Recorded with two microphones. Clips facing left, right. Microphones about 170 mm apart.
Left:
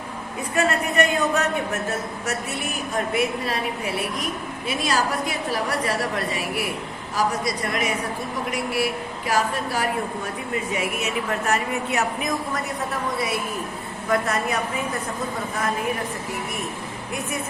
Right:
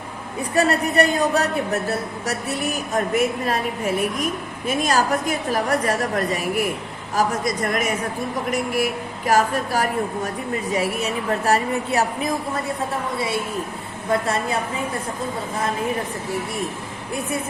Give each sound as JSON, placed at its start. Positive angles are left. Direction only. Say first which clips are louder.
{"t": 0.5, "sound": "a woman's voice", "louder": "right 3 dB", "side_deg": -35}